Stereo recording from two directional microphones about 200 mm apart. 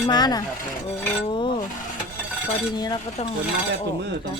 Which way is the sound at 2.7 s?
20° left (ahead or behind).